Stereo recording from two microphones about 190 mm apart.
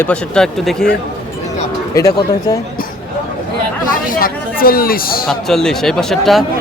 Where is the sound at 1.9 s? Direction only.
20° left (ahead or behind).